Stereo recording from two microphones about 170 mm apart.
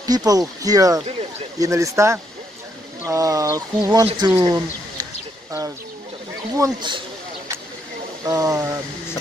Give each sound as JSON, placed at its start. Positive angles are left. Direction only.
{"t": 0.0, "sound": "speech", "side_deg": -20}
{"t": 6.5, "sound": "speech", "side_deg": -25}
{"t": 8.3, "sound": "speech", "side_deg": -20}